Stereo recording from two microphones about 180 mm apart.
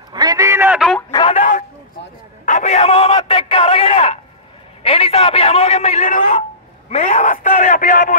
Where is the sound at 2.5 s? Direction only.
40° left (ahead or behind).